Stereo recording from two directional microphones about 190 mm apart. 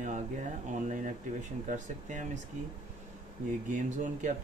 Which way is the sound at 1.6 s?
40° right (ahead or behind).